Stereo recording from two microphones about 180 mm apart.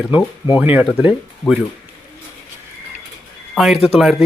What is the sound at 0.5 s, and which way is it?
Speech, 10° right (ahead or behind).